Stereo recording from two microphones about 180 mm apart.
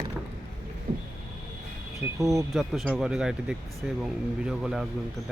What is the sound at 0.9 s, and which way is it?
Vehicle, 25° right (ahead or behind).